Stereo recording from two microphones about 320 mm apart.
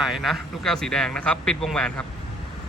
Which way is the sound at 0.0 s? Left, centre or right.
Centre.